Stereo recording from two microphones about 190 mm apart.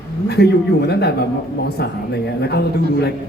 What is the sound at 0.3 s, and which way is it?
A man's voice, 60° left (ahead or behind).